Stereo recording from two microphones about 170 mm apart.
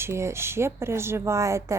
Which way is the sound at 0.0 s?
15° right (ahead or behind).